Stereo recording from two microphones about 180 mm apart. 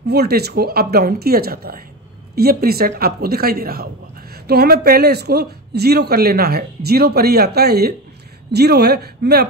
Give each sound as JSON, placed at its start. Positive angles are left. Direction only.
{"t": 0.0, "sound": "speech", "side_deg": -60}